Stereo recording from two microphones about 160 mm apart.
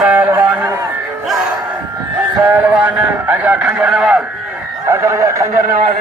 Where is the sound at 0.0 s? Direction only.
10° right (ahead or behind).